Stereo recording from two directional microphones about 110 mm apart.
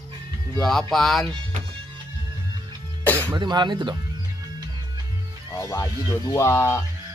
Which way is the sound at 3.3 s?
40° right (ahead or behind).